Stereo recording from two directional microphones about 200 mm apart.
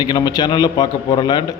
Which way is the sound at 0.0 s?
20° left (ahead or behind).